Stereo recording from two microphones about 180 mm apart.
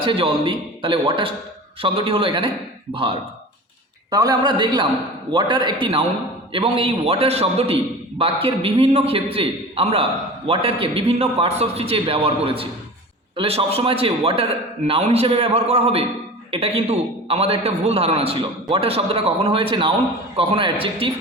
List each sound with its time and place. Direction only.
0.0 s a man's voice: 30° right (ahead or behind)